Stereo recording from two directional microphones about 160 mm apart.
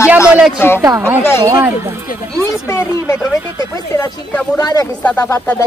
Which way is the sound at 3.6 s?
25° left (ahead or behind).